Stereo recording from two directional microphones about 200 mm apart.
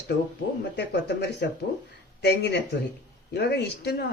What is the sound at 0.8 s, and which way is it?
Speech, 55° left (ahead or behind).